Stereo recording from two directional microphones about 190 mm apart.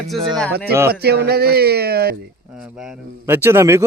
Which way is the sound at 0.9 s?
60° right (ahead or behind).